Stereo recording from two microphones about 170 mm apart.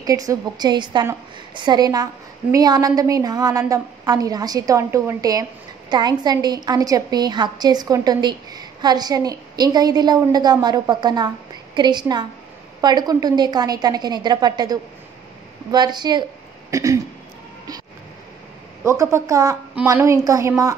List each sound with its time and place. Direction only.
0.0 s a woman's voice: 20° right (ahead or behind)
18.9 s a woman's voice: 15° right (ahead or behind)